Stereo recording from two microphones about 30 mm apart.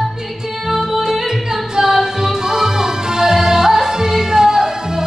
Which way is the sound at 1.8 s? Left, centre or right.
Centre.